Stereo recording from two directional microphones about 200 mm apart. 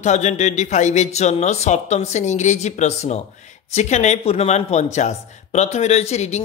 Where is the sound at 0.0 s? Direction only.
35° left (ahead or behind).